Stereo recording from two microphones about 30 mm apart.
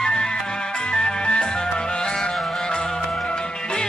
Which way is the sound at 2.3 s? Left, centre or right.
Centre.